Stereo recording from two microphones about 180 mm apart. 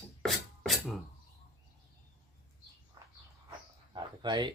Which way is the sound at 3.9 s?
25° right (ahead or behind).